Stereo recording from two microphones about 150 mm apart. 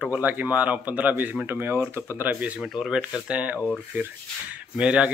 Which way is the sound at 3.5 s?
10° left (ahead or behind).